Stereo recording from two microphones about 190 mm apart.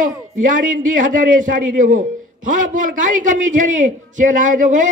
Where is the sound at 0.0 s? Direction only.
45° right (ahead or behind).